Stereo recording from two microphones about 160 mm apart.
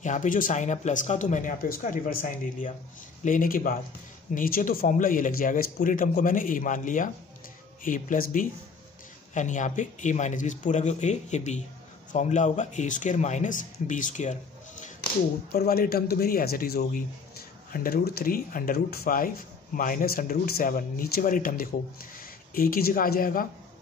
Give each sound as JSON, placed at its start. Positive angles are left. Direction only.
{"t": 0.0, "sound": "speech", "side_deg": 50}
{"t": 15.5, "sound": "a man's voice", "side_deg": 70}